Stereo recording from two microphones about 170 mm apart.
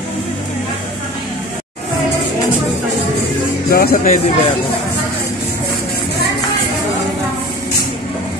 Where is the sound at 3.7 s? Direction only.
55° left (ahead or behind).